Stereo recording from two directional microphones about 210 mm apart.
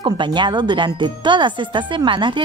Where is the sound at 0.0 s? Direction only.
20° right (ahead or behind).